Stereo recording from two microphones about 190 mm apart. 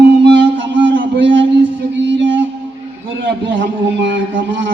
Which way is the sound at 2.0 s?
75° right (ahead or behind).